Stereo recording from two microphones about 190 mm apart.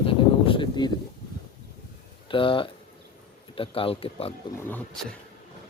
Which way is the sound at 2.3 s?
25° left (ahead or behind).